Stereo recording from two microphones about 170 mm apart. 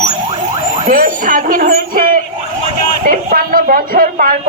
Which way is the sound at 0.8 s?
50° right (ahead or behind).